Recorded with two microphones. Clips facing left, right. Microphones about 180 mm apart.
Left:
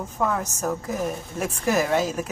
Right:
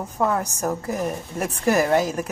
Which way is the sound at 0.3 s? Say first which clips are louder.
Right 2 dB; 10° right (ahead or behind).